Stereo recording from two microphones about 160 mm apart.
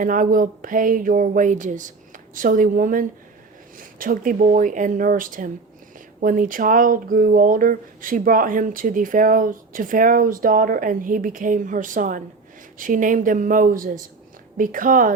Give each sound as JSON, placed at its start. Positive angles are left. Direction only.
{"t": 0.0, "sound": "speech", "side_deg": -55}